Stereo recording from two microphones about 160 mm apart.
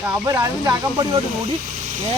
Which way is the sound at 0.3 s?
20° right (ahead or behind).